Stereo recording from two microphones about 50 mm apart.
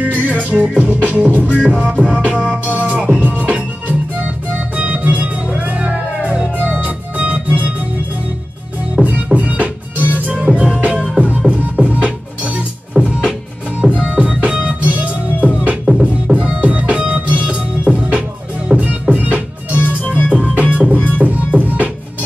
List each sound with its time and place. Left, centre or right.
0.0 s music: right
4.7 s music: right
6.6 s organ: right
9.0 s music: right
10.5 s music: right
12.9 s music: centre
15.8 s music: centre
16.3 s music: right
20.1 s music: left
20.3 s music: right